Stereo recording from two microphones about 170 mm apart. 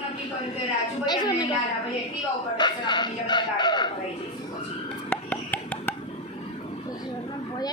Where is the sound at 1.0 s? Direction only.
25° left (ahead or behind).